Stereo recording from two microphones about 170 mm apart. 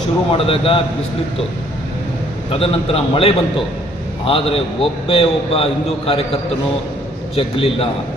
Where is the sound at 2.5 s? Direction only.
35° left (ahead or behind).